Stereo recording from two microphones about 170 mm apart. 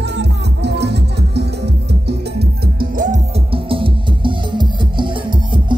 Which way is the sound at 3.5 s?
30° right (ahead or behind).